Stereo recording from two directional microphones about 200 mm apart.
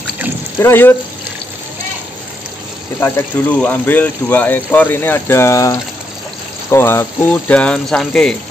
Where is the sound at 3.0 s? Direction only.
10° left (ahead or behind).